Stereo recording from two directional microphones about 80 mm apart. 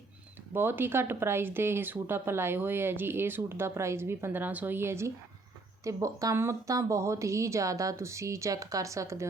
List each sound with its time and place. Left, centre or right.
0.5 s speech: right
5.8 s a woman's voice: right